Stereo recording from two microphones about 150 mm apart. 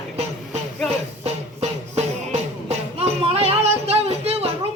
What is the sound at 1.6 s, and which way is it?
Music, 45° right (ahead or behind).